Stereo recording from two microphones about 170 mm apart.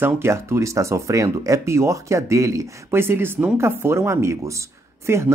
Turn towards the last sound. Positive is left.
turn(degrees=-15)  # may be behind; listen again after turning